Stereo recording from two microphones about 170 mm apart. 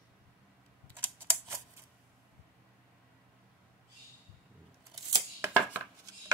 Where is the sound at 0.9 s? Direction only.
15° right (ahead or behind).